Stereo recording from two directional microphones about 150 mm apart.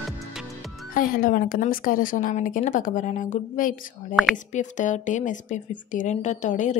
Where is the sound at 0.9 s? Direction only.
65° left (ahead or behind).